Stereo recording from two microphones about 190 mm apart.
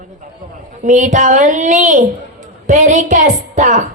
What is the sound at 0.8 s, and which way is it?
Speech, 40° right (ahead or behind).